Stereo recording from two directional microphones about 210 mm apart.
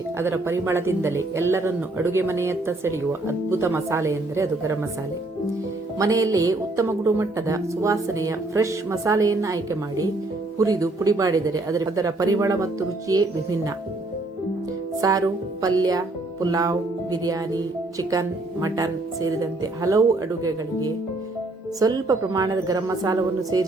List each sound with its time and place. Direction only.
0.2 s speech: 10° right (ahead or behind)
6.0 s speech: 15° right (ahead or behind)
15.0 s speech: 15° right (ahead or behind)